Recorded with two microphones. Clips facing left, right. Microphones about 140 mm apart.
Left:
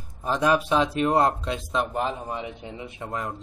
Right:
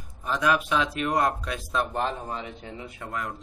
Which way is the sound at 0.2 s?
30° left (ahead or behind).